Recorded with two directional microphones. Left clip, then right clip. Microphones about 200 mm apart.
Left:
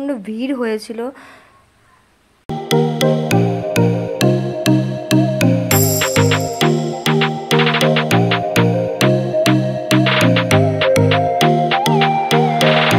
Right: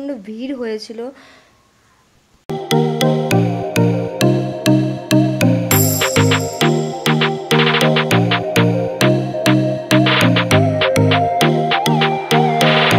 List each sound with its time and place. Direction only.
0.0 s speech: 5° left (ahead or behind)
2.7 s music: centre (ahead or behind)